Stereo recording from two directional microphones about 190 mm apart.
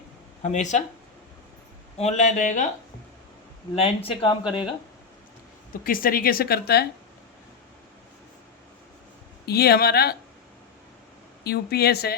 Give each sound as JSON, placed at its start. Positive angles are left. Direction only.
{"t": 0.4, "sound": "speech", "side_deg": 40}
{"t": 2.0, "sound": "speech", "side_deg": 35}
{"t": 3.8, "sound": "speech", "side_deg": 30}
{"t": 5.8, "sound": "speech", "side_deg": 50}
{"t": 9.5, "sound": "speech", "side_deg": 55}
{"t": 11.4, "sound": "speech", "side_deg": 55}